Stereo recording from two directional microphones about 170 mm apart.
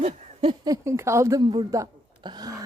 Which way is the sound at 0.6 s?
20° right (ahead or behind).